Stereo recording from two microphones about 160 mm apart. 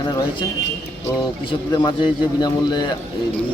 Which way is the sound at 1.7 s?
25° left (ahead or behind).